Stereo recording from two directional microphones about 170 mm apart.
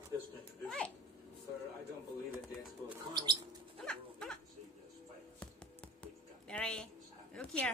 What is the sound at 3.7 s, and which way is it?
Dog, 5° left (ahead or behind).